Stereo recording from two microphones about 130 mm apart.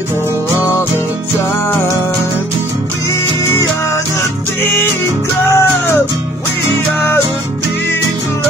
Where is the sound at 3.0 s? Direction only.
25° left (ahead or behind).